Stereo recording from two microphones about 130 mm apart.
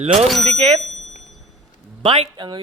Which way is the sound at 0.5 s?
50° right (ahead or behind).